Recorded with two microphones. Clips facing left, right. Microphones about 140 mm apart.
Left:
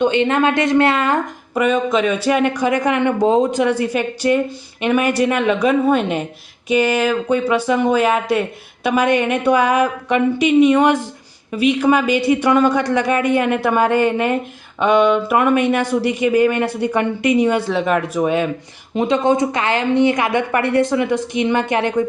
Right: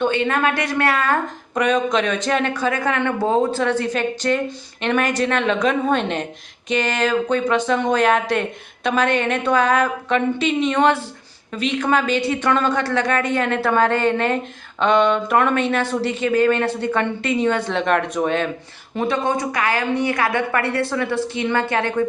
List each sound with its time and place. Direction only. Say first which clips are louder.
0.0 s a woman's voice: left 4 dB; 20° left (ahead or behind)
1.5 s speech: left 2 dB; 5° left (ahead or behind)
18.9 s a woman's voice: left 5 dB; 20° left (ahead or behind)